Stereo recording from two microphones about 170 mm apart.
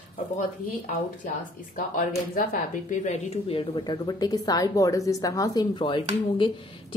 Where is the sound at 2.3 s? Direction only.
55° left (ahead or behind); by 6.5 s 30° left (ahead or behind).